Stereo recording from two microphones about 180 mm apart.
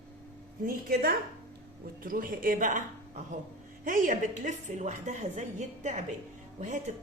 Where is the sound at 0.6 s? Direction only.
55° right (ahead or behind).